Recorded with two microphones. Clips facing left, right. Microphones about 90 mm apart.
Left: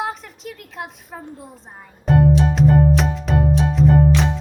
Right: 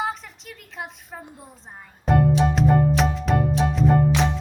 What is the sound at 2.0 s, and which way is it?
Music, centre (ahead or behind).